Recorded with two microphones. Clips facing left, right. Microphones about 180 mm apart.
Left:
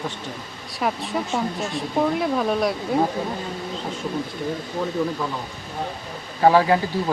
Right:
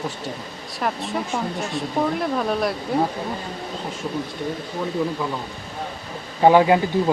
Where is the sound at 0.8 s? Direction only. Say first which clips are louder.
Left 1 dB; centre (ahead or behind).